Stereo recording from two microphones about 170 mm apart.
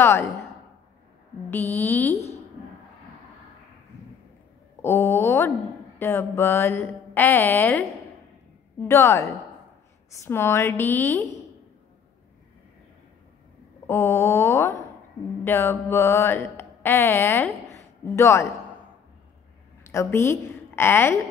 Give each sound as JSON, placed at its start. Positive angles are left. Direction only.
{"t": 0.0, "sound": "a woman's voice", "side_deg": 15}
{"t": 1.5, "sound": "mantra", "side_deg": 10}
{"t": 4.8, "sound": "mantra", "side_deg": 15}
{"t": 13.8, "sound": "mantra", "side_deg": 15}
{"t": 19.8, "sound": "a woman's voice", "side_deg": 15}